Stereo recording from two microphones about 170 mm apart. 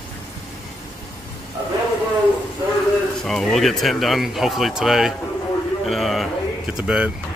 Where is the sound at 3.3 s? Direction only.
Centre (ahead or behind).